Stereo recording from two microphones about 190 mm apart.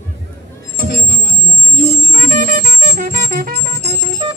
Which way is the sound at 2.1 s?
45° right (ahead or behind).